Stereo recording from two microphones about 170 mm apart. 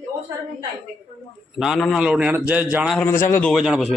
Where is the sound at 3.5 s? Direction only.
Centre (ahead or behind).